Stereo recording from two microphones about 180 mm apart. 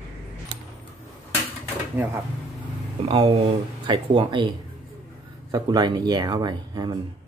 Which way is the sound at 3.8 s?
25° right (ahead or behind).